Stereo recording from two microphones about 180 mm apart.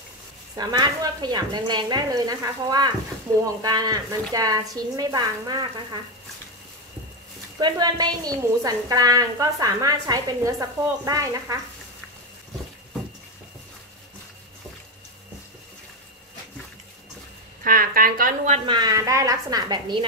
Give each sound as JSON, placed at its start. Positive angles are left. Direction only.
{"t": 0.6, "sound": "a woman's voice", "side_deg": -20}
{"t": 7.5, "sound": "a woman's voice", "side_deg": -25}
{"t": 17.6, "sound": "speech", "side_deg": -50}
{"t": 18.7, "sound": "a woman's voice", "side_deg": -20}